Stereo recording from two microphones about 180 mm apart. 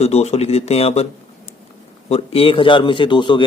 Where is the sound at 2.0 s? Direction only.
35° left (ahead or behind).